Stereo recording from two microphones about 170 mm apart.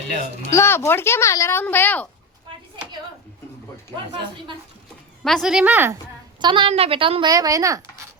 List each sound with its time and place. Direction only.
0.5 s speech: 15° left (ahead or behind)
5.2 s a woman's voice: centre (ahead or behind)
6.4 s speech: 30° right (ahead or behind)